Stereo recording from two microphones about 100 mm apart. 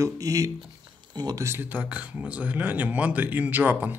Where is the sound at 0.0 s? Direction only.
35° right (ahead or behind).